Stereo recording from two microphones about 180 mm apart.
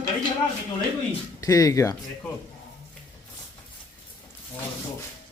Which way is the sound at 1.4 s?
20° left (ahead or behind).